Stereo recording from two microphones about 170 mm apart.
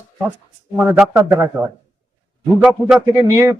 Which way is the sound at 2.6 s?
5° right (ahead or behind).